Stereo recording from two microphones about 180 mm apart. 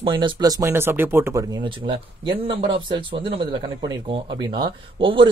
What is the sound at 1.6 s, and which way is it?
Speech, 25° right (ahead or behind).